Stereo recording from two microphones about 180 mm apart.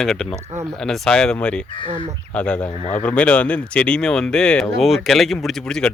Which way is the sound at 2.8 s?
40° left (ahead or behind).